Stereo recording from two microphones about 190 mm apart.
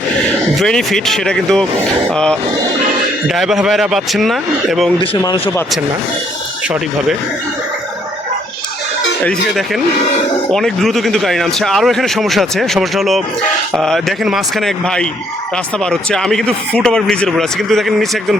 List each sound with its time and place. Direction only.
0.6 s a man's voice: centre (ahead or behind)
4.9 s a man's voice: 25° left (ahead or behind)
9.5 s a man's voice: centre (ahead or behind)